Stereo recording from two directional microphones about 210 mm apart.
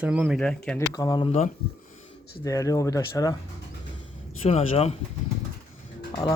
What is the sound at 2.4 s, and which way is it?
Speech, 15° left (ahead or behind).